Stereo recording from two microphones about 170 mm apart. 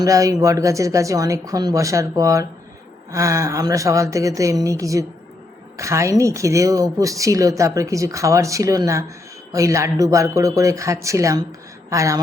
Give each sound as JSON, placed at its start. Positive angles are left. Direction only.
{"t": 0.0, "sound": "speech", "side_deg": -20}